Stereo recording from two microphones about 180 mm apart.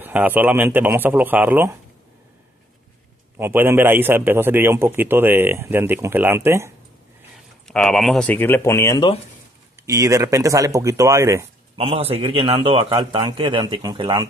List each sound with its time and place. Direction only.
0.0 s a man's voice: 10° right (ahead or behind)
3.3 s a man's voice: 15° right (ahead or behind)
7.6 s speech: centre (ahead or behind); by 9.1 s 15° left (ahead or behind)
9.8 s a man's voice: 15° right (ahead or behind)
11.7 s a man's voice: 35° right (ahead or behind)